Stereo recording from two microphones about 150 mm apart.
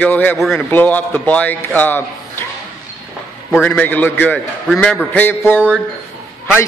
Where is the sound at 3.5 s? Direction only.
10° left (ahead or behind).